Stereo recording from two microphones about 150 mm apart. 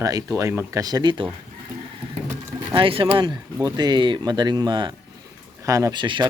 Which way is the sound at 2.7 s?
35° right (ahead or behind).